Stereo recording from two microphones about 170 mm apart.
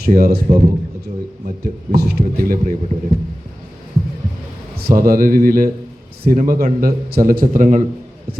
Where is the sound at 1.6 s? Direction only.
65° right (ahead or behind).